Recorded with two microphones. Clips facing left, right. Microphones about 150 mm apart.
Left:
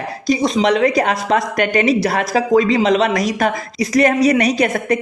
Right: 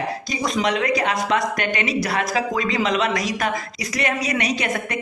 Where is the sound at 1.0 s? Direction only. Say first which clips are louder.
Left 5 dB; 40° left (ahead or behind).